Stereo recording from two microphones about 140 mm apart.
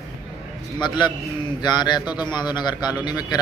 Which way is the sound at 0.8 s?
30° left (ahead or behind).